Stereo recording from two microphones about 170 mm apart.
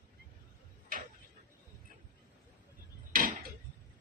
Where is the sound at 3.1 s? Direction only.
55° right (ahead or behind).